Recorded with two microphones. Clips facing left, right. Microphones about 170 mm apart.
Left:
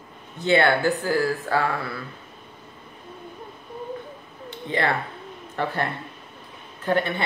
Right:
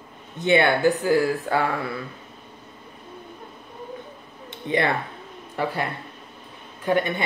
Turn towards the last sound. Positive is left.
turn(degrees=-15)  # may be behind; listen again after turning